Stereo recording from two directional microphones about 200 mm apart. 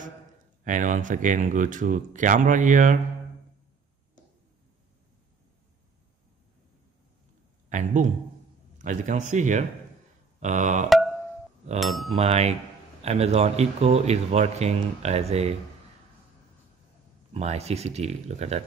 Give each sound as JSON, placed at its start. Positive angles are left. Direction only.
{"t": 0.7, "sound": "speech", "side_deg": -40}
{"t": 7.7, "sound": "speech", "side_deg": -40}
{"t": 11.8, "sound": "a sound", "side_deg": 0}
{"t": 12.2, "sound": "speech", "side_deg": -30}
{"t": 17.3, "sound": "speech", "side_deg": -35}